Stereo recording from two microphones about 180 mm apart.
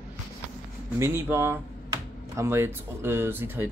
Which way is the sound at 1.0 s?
15° right (ahead or behind).